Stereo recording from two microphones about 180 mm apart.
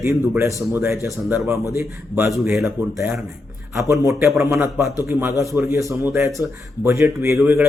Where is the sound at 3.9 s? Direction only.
15° right (ahead or behind).